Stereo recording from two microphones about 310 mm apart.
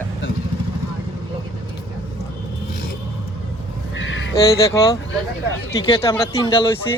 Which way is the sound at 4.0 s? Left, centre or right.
Left.